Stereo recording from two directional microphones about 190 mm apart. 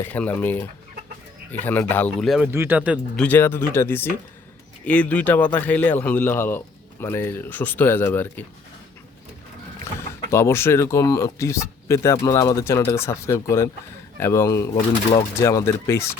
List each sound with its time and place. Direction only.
0.0 s speech: 10° left (ahead or behind)
2.5 s speech: 10° right (ahead or behind)
3.2 s speech: 10° left (ahead or behind)
10.0 s speech: 15° left (ahead or behind)